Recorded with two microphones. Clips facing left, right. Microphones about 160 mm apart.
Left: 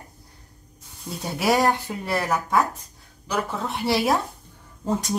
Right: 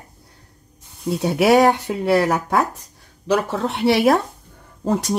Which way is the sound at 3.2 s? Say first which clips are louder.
Right 7 dB; 75° right (ahead or behind).